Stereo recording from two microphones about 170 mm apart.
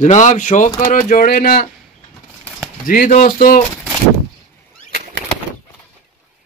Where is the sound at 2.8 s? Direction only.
55° left (ahead or behind).